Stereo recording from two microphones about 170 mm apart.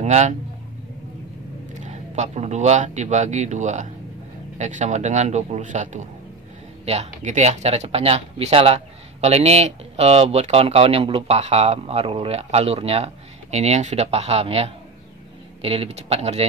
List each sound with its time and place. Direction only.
0.0 s a man's voice: 45° right (ahead or behind)
1.8 s speech: 45° right (ahead or behind)